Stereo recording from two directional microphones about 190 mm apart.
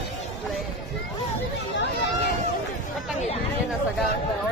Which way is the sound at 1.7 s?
65° left (ahead or behind).